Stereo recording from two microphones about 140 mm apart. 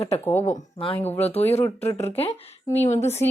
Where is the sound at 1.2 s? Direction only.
50° left (ahead or behind).